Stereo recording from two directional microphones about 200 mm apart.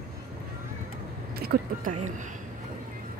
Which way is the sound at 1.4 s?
45° right (ahead or behind).